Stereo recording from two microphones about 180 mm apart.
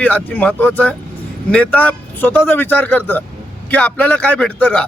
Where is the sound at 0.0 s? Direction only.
10° left (ahead or behind).